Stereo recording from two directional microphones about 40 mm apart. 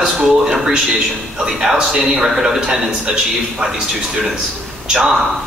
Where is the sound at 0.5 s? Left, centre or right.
Centre.